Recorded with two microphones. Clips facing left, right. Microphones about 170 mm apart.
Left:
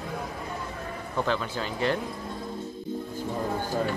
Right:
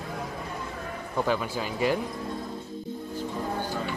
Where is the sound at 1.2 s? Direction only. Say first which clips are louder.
Right 2 dB; 10° right (ahead or behind).